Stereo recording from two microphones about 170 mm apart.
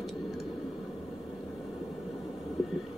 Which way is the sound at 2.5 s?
Centre (ahead or behind).